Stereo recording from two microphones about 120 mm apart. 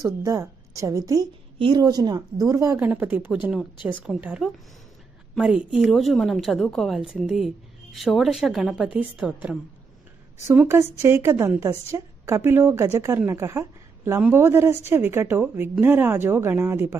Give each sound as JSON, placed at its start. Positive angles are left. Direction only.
{"t": 0.0, "sound": "a woman's voice", "side_deg": -25}
{"t": 1.5, "sound": "a woman's voice", "side_deg": -40}
{"t": 2.8, "sound": "a woman's voice", "side_deg": -15}
{"t": 10.4, "sound": "a woman's voice", "side_deg": -20}